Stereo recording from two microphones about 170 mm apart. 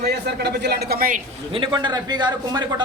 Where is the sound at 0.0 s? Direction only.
70° right (ahead or behind).